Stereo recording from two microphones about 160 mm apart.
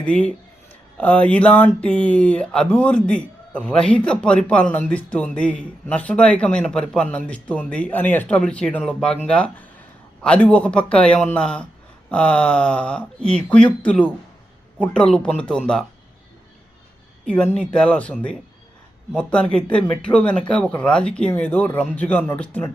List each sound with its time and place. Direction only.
0.0 s speech: 5° left (ahead or behind)
17.2 s speech: 5° left (ahead or behind)